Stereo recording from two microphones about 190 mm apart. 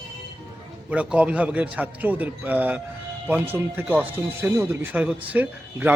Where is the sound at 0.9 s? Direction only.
5° right (ahead or behind).